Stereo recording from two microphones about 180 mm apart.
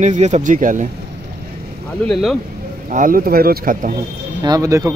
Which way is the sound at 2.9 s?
50° right (ahead or behind).